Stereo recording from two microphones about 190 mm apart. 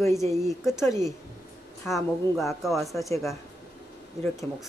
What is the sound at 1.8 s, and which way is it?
Speech, centre (ahead or behind).